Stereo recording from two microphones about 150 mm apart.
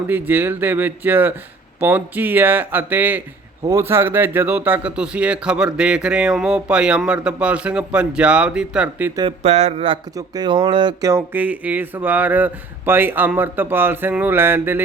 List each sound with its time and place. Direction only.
0.1 s speech: 15° right (ahead or behind)
3.6 s speech: 20° right (ahead or behind)
9.4 s speech: 45° right (ahead or behind)
10.2 s speech: 25° right (ahead or behind)
11.1 s speech: 10° right (ahead or behind)